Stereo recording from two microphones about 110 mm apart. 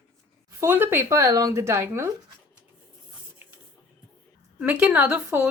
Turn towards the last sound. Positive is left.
turn(degrees=-15)  # may be behind; listen again after turning